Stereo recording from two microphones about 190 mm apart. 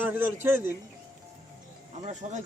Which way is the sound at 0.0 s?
10° right (ahead or behind).